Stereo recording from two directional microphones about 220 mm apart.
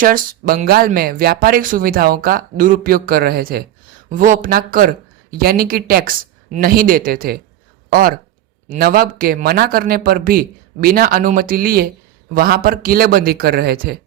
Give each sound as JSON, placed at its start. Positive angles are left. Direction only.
{"t": 0.0, "sound": "a man's voice", "side_deg": -40}